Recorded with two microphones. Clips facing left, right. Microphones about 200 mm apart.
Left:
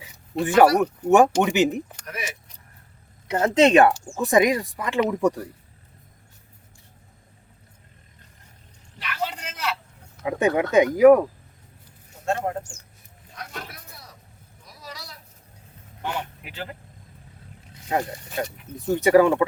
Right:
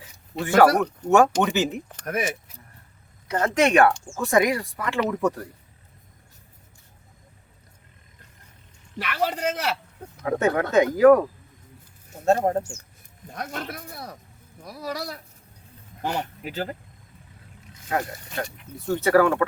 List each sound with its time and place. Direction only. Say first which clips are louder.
0.4 s speech: left 1 dB; 15° left (ahead or behind)
2.0 s speech: right 8 dB; 50° right (ahead or behind)
3.2 s speech: left 4 dB; 20° left (ahead or behind)
9.0 s a man's voice: right 5 dB; 60° right (ahead or behind)
10.4 s speech: left 2 dB; 15° left (ahead or behind)
12.2 s speech: right 6 dB; 40° right (ahead or behind)
13.2 s a sound: right 6 dB; 50° right (ahead or behind)
14.6 s speech: right 11 dB; 60° right (ahead or behind)
16.0 s speech: right 2 dB; 40° right (ahead or behind)
17.8 s speech: left 2 dB; 15° left (ahead or behind)